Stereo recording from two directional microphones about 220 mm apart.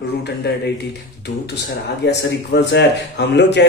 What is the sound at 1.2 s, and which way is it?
A man's voice, 50° left (ahead or behind).